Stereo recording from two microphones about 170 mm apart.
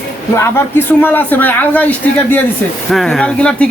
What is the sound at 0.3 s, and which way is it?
A man's voice, 15° left (ahead or behind).